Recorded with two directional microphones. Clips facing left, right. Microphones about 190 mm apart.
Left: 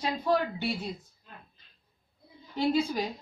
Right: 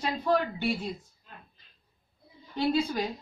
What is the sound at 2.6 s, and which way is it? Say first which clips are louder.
Speech: even; 10° left (ahead or behind).